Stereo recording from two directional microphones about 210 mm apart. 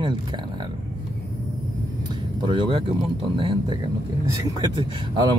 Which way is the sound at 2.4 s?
20° right (ahead or behind).